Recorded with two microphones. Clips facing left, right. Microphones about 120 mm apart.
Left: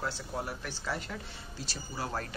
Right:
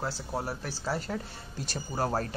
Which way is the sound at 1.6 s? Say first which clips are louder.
Right 7 dB; 50° right (ahead or behind).